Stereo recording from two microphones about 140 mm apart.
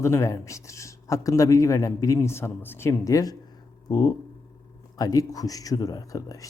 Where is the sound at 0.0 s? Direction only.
20° left (ahead or behind).